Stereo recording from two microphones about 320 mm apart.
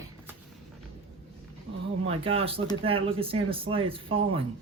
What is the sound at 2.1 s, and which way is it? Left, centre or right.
Speech, centre.